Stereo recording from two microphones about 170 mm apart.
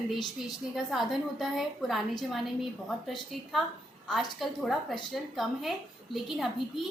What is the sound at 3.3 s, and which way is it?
A woman's voice, centre (ahead or behind).